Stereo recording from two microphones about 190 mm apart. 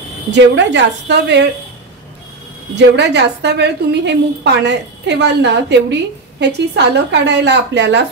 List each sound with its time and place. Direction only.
0.3 s a woman's voice: 70° right (ahead or behind)
2.7 s a woman's voice: 65° right (ahead or behind)